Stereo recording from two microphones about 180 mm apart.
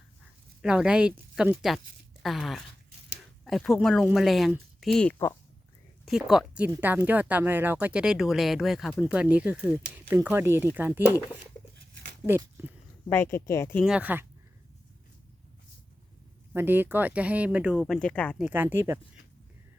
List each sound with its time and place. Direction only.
0.6 s speech: 5° right (ahead or behind)
12.2 s speech: 15° right (ahead or behind)
13.1 s speech: 15° left (ahead or behind)
13.8 s speech: 5° right (ahead or behind)
16.5 s speech: 10° right (ahead or behind); by 18.4 s 5° left (ahead or behind)
18.4 s speech: 10° right (ahead or behind)